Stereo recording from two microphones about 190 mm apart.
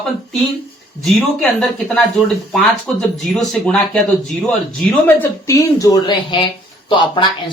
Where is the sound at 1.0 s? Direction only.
5° left (ahead or behind).